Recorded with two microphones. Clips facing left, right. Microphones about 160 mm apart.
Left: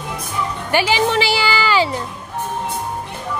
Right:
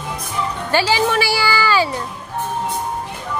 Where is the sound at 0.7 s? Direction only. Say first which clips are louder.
Even; 15° left (ahead or behind).